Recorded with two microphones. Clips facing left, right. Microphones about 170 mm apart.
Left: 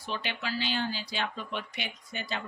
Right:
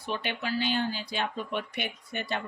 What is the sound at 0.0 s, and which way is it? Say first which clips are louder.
Speech: right 3 dB; 55° right (ahead or behind).